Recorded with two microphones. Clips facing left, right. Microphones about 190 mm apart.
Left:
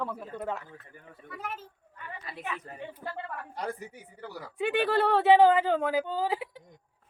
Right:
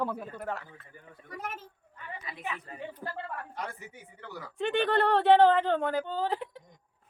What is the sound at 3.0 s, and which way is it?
Speech, 35° right (ahead or behind).